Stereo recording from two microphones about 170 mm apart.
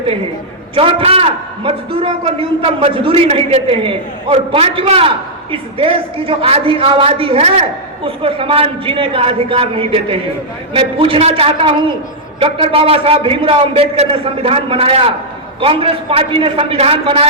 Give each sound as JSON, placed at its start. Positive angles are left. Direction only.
{"t": 0.8, "sound": "a man's voice", "side_deg": -30}